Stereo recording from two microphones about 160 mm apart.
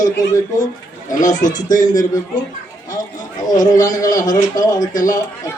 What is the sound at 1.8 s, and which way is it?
Speech, 25° left (ahead or behind).